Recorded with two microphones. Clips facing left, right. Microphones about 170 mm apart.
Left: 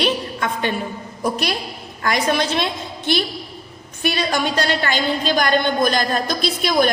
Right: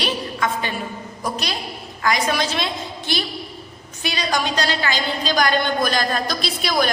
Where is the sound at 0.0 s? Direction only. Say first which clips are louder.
Left 2 dB; 55° left (ahead or behind).